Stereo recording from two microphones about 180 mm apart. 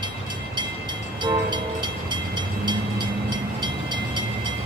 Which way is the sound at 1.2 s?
25° right (ahead or behind).